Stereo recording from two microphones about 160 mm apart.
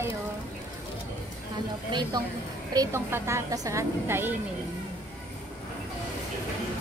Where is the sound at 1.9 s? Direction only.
30° right (ahead or behind).